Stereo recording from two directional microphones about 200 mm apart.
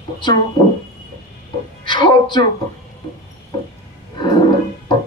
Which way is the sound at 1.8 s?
25° left (ahead or behind).